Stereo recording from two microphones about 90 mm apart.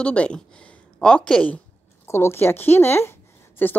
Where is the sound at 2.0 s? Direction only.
30° left (ahead or behind).